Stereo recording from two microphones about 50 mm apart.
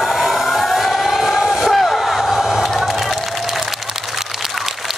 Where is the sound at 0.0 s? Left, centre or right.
Centre.